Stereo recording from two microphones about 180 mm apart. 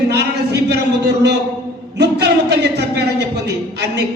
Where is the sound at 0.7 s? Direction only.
70° right (ahead or behind).